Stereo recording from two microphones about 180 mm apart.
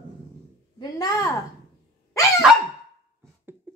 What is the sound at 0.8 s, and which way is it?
Speech, 20° left (ahead or behind).